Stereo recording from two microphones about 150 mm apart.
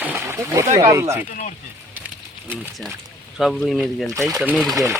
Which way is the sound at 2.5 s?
5° right (ahead or behind).